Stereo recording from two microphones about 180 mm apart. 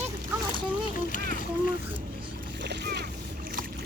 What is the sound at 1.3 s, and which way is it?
Boat, 45° left (ahead or behind).